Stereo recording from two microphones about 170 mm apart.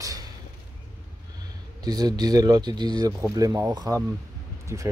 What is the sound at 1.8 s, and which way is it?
Speech, 25° right (ahead or behind).